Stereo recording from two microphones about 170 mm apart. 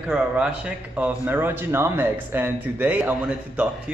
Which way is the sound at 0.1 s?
5° right (ahead or behind).